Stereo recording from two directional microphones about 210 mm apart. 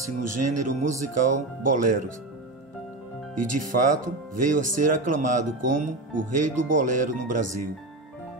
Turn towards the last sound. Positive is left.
turn(degrees=-40)  # may be behind; listen again after turning